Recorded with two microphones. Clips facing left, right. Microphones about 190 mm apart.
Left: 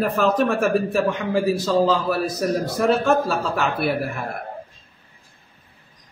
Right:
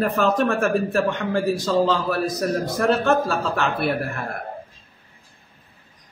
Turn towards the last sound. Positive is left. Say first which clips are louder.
# left 1 dB
turn(degrees=0)  # may be behind; listen again after turning